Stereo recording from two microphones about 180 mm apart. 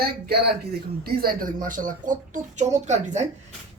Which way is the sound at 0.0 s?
60° right (ahead or behind).